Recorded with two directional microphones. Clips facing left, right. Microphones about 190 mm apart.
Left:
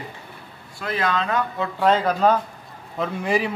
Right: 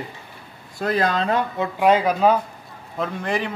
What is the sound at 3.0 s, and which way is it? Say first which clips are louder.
Speech: left 2 dB; 5° left (ahead or behind).